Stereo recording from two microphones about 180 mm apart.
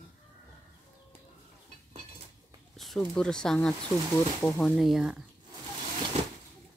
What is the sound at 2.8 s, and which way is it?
Speech, centre (ahead or behind).